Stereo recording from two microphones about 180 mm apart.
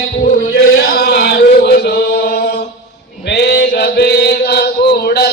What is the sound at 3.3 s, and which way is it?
Mantra, 65° left (ahead or behind).